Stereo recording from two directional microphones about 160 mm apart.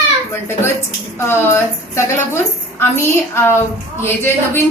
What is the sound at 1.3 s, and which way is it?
A woman's voice, 15° left (ahead or behind).